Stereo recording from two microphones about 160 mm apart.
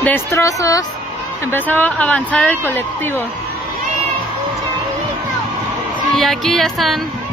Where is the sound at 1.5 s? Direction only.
10° left (ahead or behind).